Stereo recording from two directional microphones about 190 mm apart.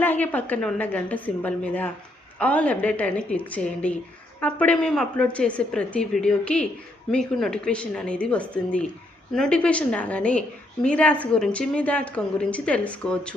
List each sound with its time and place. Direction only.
0.0 s a woman's voice: 10° left (ahead or behind)